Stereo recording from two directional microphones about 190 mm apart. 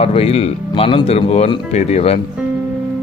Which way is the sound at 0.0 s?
30° left (ahead or behind).